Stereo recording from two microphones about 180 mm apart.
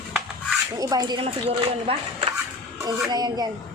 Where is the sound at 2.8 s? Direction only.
20° right (ahead or behind).